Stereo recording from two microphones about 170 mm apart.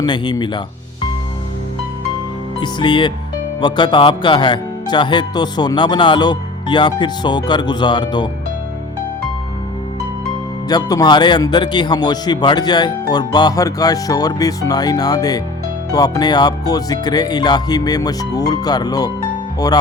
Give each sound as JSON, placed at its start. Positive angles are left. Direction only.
{"t": 0.0, "sound": "speech", "side_deg": 25}
{"t": 2.6, "sound": "speech", "side_deg": 25}
{"t": 10.7, "sound": "speech", "side_deg": 25}